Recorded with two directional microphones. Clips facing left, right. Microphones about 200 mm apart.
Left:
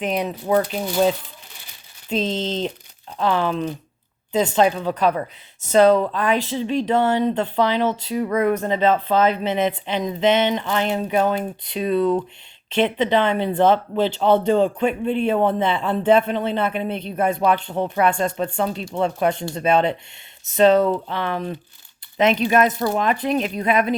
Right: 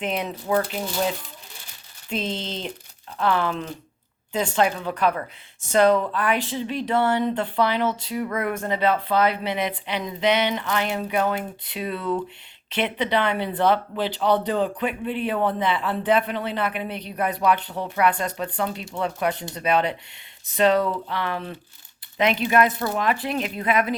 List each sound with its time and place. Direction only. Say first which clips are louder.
0.0 s speech: left 4 dB; 15° left (ahead or behind)